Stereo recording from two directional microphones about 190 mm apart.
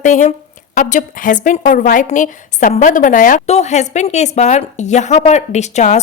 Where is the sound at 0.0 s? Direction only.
40° left (ahead or behind).